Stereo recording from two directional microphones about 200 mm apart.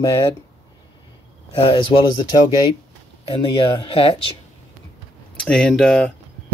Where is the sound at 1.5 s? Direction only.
25° left (ahead or behind).